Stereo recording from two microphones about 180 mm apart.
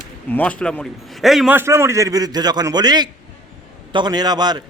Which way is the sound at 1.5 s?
15° right (ahead or behind).